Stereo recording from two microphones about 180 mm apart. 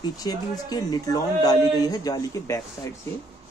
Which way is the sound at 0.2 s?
20° left (ahead or behind).